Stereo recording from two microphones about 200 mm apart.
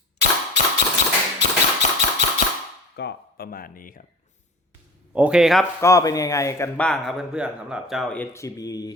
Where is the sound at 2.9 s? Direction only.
55° left (ahead or behind).